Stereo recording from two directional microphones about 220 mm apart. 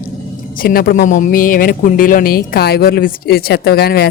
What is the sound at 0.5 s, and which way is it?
Speech, 40° left (ahead or behind).